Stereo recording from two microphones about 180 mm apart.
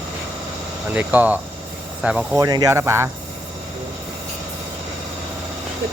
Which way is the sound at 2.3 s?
20° right (ahead or behind).